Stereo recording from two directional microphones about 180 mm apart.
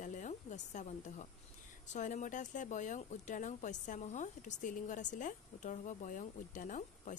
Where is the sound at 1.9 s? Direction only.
45° left (ahead or behind).